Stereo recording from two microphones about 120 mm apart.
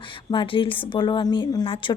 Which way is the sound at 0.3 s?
45° left (ahead or behind).